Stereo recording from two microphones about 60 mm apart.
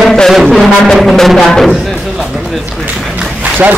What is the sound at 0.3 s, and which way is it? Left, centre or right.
Music, centre.